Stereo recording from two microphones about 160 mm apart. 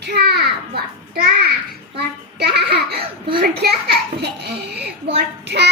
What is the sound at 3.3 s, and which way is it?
A child's voice, 80° right.